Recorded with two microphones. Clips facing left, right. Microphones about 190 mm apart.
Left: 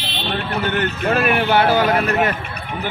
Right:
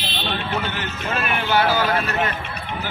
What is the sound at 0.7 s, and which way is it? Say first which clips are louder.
Speech: left 8 dB; 60° left (ahead or behind).